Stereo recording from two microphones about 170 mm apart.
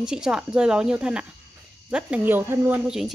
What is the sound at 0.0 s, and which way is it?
A woman's voice, 5° right (ahead or behind).